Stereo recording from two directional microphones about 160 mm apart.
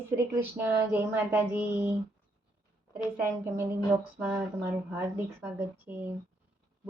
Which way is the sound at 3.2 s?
15° right (ahead or behind).